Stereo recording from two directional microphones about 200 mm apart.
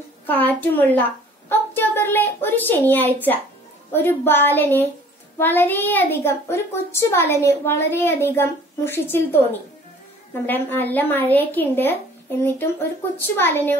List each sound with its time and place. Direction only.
0.3 s a woman's voice: 10° left (ahead or behind)